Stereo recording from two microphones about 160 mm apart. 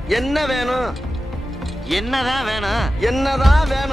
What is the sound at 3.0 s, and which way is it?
Speech, centre (ahead or behind).